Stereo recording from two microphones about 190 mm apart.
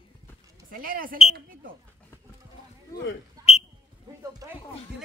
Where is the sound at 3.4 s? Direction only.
20° right (ahead or behind).